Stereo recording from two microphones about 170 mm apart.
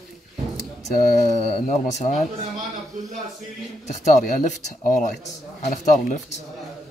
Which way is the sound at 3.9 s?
45° left (ahead or behind).